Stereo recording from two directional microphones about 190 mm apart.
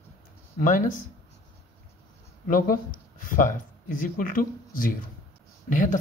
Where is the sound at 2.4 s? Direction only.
50° left (ahead or behind).